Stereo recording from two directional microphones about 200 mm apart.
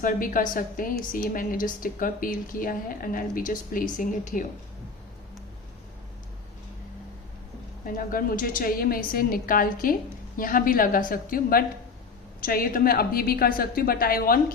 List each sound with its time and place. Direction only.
0.0 s a woman's voice: 45° left (ahead or behind)
7.9 s a woman's voice: 45° left (ahead or behind)